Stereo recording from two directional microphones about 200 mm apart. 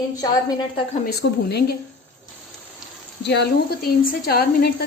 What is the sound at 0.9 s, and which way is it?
Speech, 50° left (ahead or behind).